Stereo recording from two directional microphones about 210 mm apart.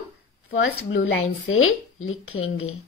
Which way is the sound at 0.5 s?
70° left (ahead or behind).